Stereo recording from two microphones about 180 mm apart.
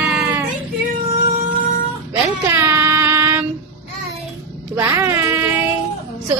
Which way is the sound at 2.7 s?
15° right (ahead or behind).